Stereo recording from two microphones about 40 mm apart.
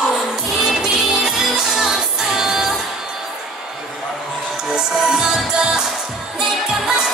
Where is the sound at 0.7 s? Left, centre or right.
Centre.